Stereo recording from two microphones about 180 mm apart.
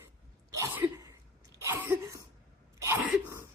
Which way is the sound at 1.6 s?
15° right (ahead or behind).